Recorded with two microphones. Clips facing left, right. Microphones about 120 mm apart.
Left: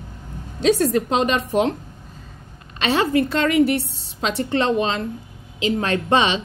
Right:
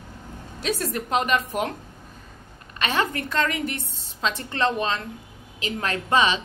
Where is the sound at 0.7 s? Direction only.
40° left (ahead or behind).